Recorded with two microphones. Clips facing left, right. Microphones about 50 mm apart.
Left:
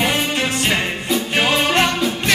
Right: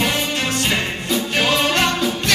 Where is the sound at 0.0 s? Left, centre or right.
Centre.